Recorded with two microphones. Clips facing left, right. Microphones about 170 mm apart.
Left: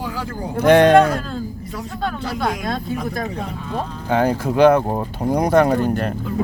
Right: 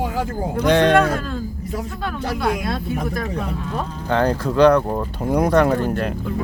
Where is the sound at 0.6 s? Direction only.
55° left (ahead or behind).